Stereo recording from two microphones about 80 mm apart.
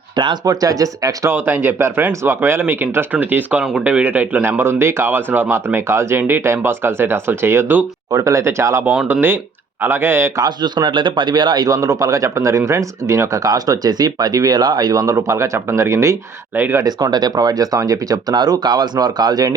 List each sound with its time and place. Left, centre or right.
0.4 s a man's voice: right
1.3 s speech: right
8.1 s speech: right
9.8 s speech: right
10.6 s a man's voice: right
15.0 s speech: right
16.6 s speech: right
16.8 s a man's voice: right